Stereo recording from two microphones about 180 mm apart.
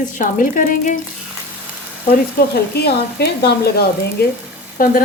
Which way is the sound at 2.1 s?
60° left (ahead or behind).